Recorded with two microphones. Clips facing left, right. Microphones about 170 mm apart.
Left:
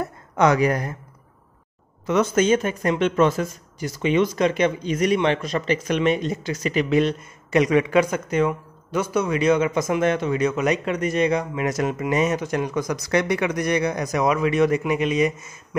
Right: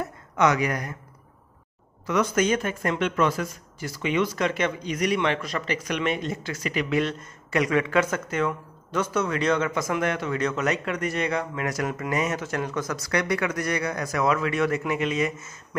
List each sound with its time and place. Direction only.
0.4 s speech: 30° left (ahead or behind)
2.0 s speech: 25° left (ahead or behind)